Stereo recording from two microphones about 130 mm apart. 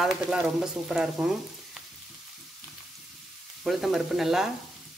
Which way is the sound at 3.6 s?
Centre (ahead or behind).